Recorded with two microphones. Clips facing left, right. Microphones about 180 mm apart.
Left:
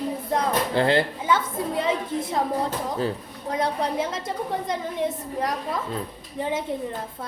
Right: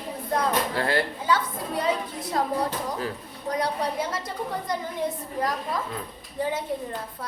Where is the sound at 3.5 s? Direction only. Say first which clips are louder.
Left 2 dB; 25° left (ahead or behind).